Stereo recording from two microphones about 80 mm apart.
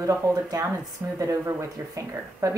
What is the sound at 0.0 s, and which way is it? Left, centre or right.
Speech, right.